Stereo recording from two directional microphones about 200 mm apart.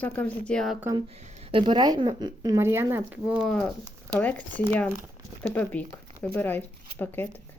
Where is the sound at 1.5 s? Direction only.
25° right (ahead or behind); by 7.3 s 10° left (ahead or behind).